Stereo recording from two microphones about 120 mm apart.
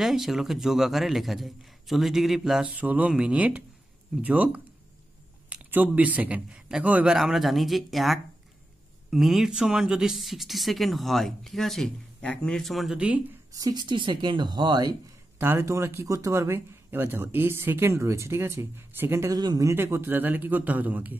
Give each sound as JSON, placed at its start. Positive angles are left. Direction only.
{"t": 0.0, "sound": "a man's voice", "side_deg": 0}
{"t": 13.5, "sound": "speech", "side_deg": -30}
{"t": 15.3, "sound": "speech", "side_deg": -20}
{"t": 19.3, "sound": "speech", "side_deg": -35}
{"t": 19.7, "sound": "a man's voice", "side_deg": -20}